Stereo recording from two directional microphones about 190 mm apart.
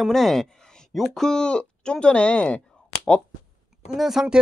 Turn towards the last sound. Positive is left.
turn(degrees=-5)  # may be behind; listen again after turning